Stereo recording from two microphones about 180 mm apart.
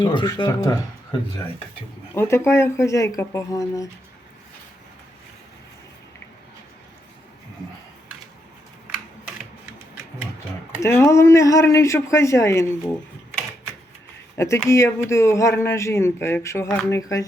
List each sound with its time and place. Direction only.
0.0 s speech: 25° left (ahead or behind)
2.1 s speech: 15° left (ahead or behind)
10.8 s speech: 15° left (ahead or behind)
14.3 s speech: 15° left (ahead or behind)